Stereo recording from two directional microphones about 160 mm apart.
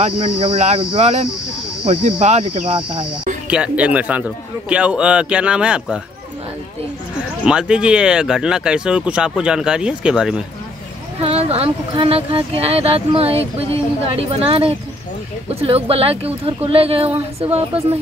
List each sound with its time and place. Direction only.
0.0 s speech: 35° right (ahead or behind)
3.4 s a man's voice: 5° right (ahead or behind)
7.4 s speech: 5° right (ahead or behind)
11.1 s speech: 40° right (ahead or behind)